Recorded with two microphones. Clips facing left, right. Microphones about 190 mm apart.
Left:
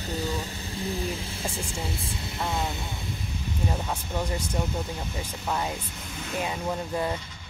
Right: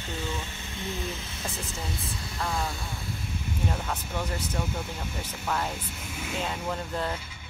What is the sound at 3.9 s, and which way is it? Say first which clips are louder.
Speech: left 2 dB; 10° left (ahead or behind).